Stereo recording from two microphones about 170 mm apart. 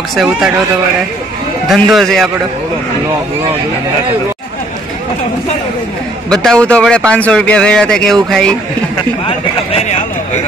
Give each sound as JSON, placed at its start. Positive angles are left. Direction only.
{"t": 0.1, "sound": "speech", "side_deg": -5}
{"t": 1.7, "sound": "speech", "side_deg": 0}
{"t": 6.3, "sound": "speech", "side_deg": 5}
{"t": 9.7, "sound": "vehicle", "side_deg": 40}